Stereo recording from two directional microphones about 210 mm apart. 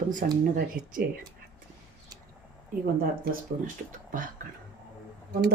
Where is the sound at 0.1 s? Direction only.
40° right (ahead or behind).